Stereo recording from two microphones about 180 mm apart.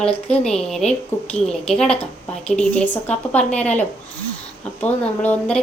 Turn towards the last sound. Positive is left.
turn(degrees=10)  # may be behind; listen again after turning